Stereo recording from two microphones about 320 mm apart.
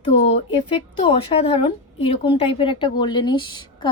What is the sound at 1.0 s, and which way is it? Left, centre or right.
A woman's voice, centre.